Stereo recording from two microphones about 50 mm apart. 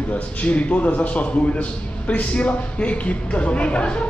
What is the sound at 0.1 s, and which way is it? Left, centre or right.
A man's voice, left.